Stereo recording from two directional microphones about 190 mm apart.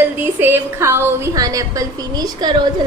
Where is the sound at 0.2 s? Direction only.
10° right (ahead or behind).